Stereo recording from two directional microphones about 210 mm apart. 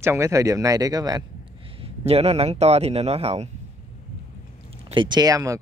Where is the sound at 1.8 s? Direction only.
30° right (ahead or behind).